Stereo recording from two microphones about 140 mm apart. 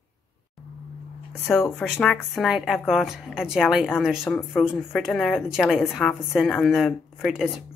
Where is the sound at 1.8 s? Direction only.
5° left (ahead or behind).